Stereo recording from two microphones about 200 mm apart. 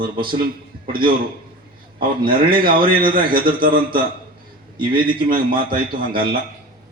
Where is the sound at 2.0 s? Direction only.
45° right (ahead or behind).